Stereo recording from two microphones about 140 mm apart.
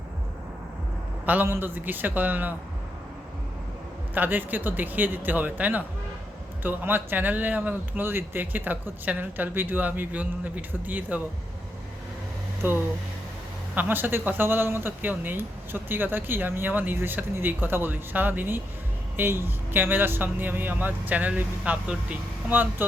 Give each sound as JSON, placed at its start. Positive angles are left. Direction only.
{"t": 1.2, "sound": "speech", "side_deg": -15}
{"t": 4.1, "sound": "speech", "side_deg": -15}
{"t": 12.6, "sound": "speech", "side_deg": -15}